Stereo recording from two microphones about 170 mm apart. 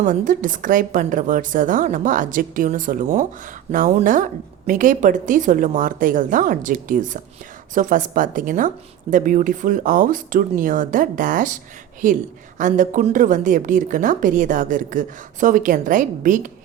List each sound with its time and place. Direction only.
0.0 s speech: 50° right (ahead or behind)